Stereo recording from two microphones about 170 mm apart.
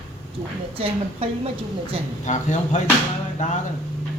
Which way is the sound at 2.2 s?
45° left (ahead or behind).